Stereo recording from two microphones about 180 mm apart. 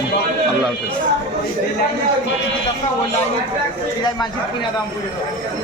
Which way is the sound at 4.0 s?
25° left (ahead or behind).